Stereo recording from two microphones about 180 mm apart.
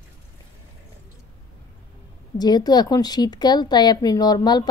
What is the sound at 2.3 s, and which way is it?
A woman's voice, 20° left (ahead or behind).